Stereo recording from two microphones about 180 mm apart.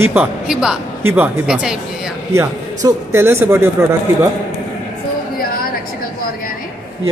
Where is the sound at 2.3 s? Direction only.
20° right (ahead or behind).